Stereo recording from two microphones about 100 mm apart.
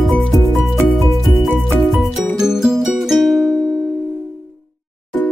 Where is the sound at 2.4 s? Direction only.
5° right (ahead or behind).